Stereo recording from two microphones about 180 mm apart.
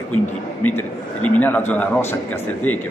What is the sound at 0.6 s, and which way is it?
A man's voice, 10° left (ahead or behind).